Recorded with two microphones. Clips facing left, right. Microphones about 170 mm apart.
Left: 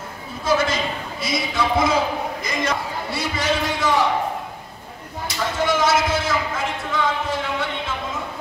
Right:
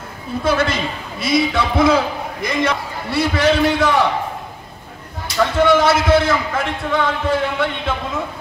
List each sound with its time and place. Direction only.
0.4 s a sound: 60° right (ahead or behind)
1.2 s a man's voice: 65° right (ahead or behind)
5.4 s a man's voice: 60° right (ahead or behind)